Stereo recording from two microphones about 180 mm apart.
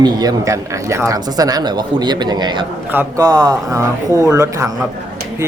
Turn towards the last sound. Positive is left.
turn(degrees=-15)  # may be behind; listen again after turning